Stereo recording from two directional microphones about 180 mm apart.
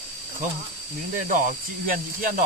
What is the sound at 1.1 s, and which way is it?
Speech, 45° right (ahead or behind).